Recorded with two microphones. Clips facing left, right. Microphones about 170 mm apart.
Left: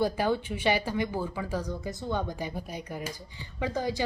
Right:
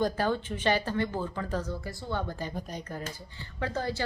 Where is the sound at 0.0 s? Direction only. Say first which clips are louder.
Left 1 dB; 10° left (ahead or behind).